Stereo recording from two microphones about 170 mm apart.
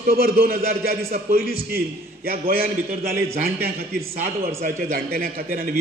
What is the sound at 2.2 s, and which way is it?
Speech, 60° right (ahead or behind).